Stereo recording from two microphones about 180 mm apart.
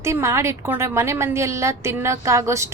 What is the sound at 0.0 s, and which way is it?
A woman's voice, 15° right (ahead or behind).